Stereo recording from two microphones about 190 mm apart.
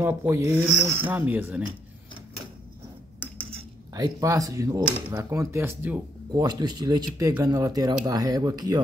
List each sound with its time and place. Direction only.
0.0 s speech: 10° right (ahead or behind)
3.4 s speech: 20° right (ahead or behind)
6.4 s speech: 20° right (ahead or behind)